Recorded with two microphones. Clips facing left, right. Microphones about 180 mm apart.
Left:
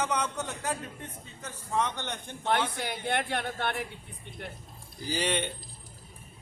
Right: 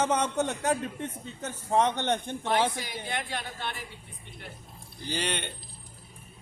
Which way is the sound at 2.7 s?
60° left (ahead or behind).